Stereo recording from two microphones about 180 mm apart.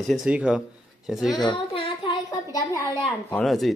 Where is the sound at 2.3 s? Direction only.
20° left (ahead or behind).